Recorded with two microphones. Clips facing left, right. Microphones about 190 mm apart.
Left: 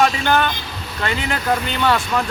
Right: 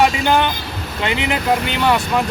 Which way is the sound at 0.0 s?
20° right (ahead or behind).